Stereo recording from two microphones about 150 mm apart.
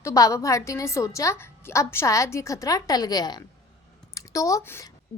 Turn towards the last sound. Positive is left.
turn(degrees=20)  # may be behind; listen again after turning